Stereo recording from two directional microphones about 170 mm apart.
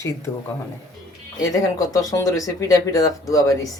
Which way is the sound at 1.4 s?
20° left (ahead or behind).